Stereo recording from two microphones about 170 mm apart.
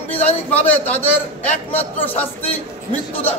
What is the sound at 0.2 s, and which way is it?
A man's voice, 10° left (ahead or behind).